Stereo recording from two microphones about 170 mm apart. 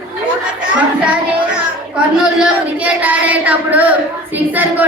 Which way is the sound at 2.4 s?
10° right (ahead or behind).